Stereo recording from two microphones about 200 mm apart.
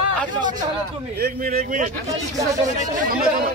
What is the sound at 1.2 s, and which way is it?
Speech, 50° right (ahead or behind).